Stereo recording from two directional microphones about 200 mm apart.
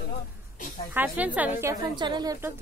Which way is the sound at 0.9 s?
10° right (ahead or behind).